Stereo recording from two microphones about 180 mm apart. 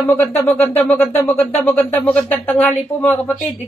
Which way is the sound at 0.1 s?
10° left (ahead or behind).